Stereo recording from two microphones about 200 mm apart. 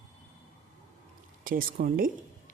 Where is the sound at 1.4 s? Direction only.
45° right (ahead or behind).